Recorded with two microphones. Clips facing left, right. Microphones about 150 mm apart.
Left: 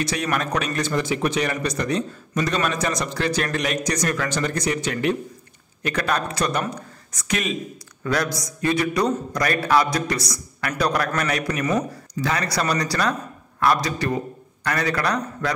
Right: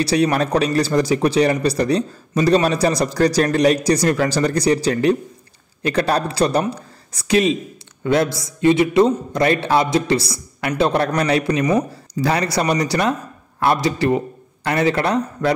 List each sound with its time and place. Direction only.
0.0 s a man's voice: 35° right (ahead or behind)